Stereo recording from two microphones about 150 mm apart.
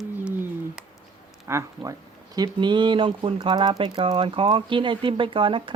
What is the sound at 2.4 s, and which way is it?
Speech, 30° right (ahead or behind).